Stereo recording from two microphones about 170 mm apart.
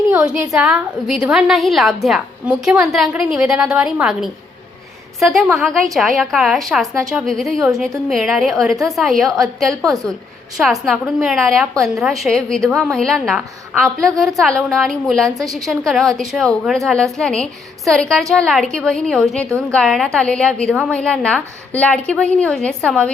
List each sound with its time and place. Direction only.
0.1 s a woman's voice: 5° right (ahead or behind)